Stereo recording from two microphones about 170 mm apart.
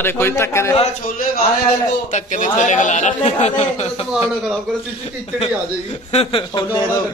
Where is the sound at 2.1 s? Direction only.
45° left (ahead or behind).